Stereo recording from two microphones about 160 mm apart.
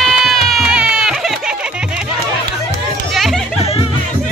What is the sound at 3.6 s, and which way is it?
Music, 40° left (ahead or behind).